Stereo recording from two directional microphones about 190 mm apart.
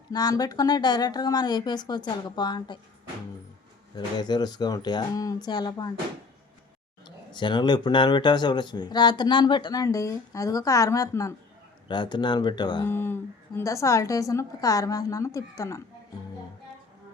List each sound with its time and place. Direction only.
0.1 s speech: 20° left (ahead or behind)
3.9 s speech: 20° left (ahead or behind)
7.0 s speech: 25° left (ahead or behind)
12.8 s a woman's voice: 10° left (ahead or behind)